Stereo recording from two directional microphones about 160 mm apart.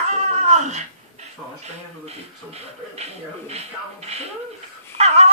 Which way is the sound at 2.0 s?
40° right (ahead or behind).